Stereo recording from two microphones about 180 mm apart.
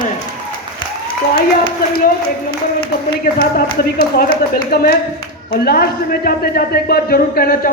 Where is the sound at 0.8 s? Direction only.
25° left (ahead or behind).